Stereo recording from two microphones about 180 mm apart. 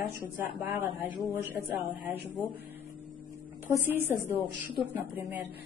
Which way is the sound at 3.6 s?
10° right (ahead or behind).